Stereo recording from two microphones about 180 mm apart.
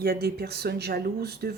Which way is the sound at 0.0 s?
60° right (ahead or behind).